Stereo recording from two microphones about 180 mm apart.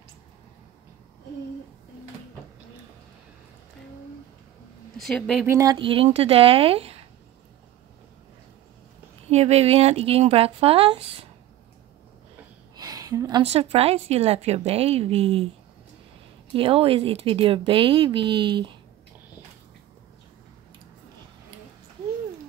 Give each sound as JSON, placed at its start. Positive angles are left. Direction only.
{"t": 4.9, "sound": "speech", "side_deg": 0}
{"t": 5.5, "sound": "speech", "side_deg": -15}
{"t": 5.8, "sound": "a woman's voice", "side_deg": -30}
{"t": 9.3, "sound": "a woman's voice", "side_deg": -35}
{"t": 12.7, "sound": "a sound", "side_deg": -20}
{"t": 13.4, "sound": "a woman's voice", "side_deg": -35}
{"t": 16.5, "sound": "speech", "side_deg": -30}